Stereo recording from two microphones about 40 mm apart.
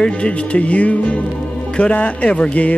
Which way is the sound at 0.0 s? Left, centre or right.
Left.